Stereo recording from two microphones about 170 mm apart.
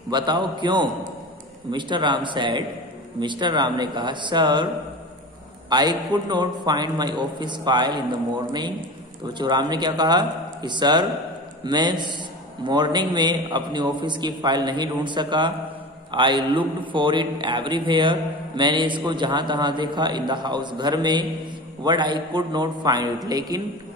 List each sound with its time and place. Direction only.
0.1 s a man's voice: 25° right (ahead or behind)
5.7 s a man's voice: 25° right (ahead or behind)
9.2 s a man's voice: 25° right (ahead or behind)